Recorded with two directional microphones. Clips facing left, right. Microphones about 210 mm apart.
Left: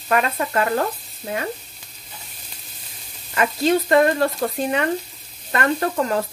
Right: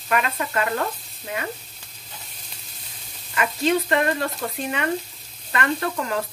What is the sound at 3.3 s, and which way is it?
Speech, 40° left (ahead or behind).